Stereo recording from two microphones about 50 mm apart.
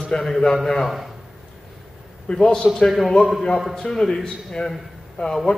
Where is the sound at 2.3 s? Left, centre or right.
Centre.